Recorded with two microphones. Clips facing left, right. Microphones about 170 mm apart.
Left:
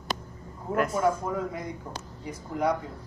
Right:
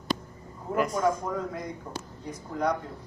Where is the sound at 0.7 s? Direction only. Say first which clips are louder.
Left 1 dB; centre (ahead or behind).